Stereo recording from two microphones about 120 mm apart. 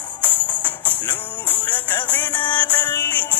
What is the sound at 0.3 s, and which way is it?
Music, 15° left (ahead or behind).